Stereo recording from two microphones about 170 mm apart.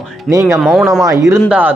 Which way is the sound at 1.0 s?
20° right (ahead or behind).